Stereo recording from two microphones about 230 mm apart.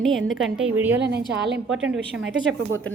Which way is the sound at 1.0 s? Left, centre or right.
Right.